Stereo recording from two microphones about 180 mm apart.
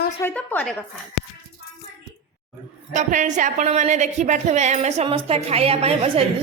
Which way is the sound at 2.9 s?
45° right (ahead or behind).